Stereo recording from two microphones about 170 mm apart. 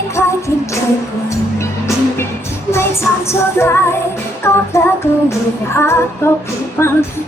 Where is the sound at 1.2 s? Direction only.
15° left (ahead or behind).